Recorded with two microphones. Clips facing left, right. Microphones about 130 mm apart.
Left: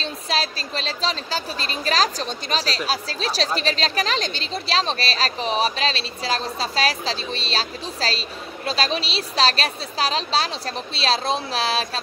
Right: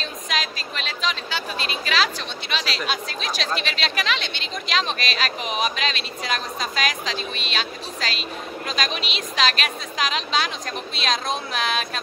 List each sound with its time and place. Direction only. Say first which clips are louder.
0.0 s speech: left 3 dB; 35° left (ahead or behind)